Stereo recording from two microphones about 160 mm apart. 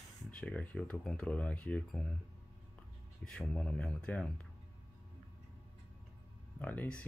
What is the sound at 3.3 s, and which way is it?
Speech, 5° left (ahead or behind).